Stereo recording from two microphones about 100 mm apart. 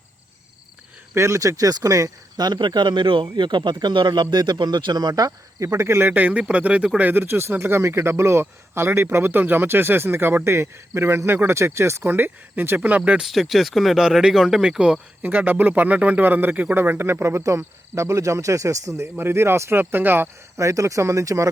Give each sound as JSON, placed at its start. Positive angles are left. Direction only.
{"t": 1.1, "sound": "speech", "side_deg": -30}
{"t": 13.0, "sound": "speech", "side_deg": -5}